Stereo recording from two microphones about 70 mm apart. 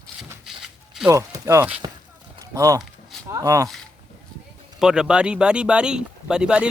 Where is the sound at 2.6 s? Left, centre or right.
Right.